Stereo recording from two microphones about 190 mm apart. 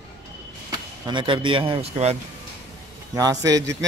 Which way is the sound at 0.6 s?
25° right (ahead or behind).